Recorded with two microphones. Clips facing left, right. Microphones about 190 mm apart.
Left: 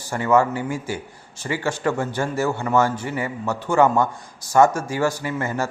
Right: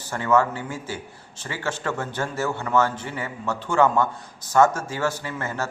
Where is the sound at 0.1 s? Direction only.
10° left (ahead or behind).